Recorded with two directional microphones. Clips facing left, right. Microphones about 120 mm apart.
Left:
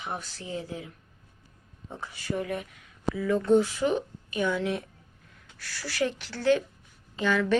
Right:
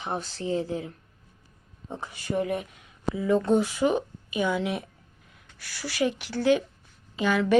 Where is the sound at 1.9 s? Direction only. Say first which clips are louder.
Right 3 dB; 20° right (ahead or behind).